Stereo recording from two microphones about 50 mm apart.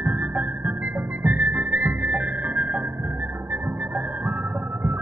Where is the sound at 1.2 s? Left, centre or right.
Right.